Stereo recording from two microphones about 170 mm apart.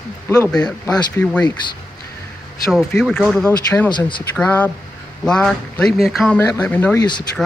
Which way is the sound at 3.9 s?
25° left (ahead or behind).